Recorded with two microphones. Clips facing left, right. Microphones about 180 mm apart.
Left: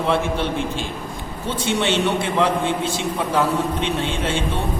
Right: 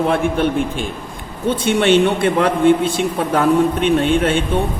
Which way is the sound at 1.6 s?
55° right (ahead or behind).